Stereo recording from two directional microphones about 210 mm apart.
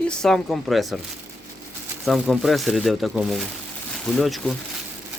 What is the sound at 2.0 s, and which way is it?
Speech, centre (ahead or behind).